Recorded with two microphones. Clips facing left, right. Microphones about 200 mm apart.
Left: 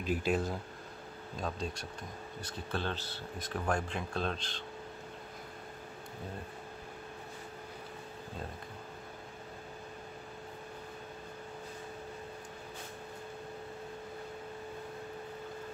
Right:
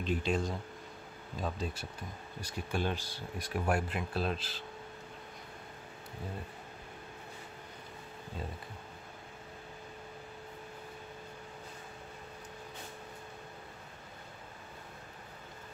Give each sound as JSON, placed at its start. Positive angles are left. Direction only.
{"t": 0.0, "sound": "speech", "side_deg": 5}
{"t": 1.4, "sound": "speech", "side_deg": -5}